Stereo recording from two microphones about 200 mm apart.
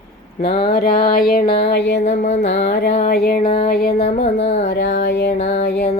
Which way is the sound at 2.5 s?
55° left (ahead or behind).